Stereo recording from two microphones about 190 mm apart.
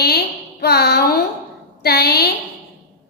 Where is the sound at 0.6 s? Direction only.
60° left (ahead or behind).